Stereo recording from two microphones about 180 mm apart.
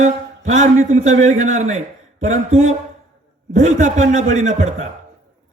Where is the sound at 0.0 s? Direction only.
40° right (ahead or behind).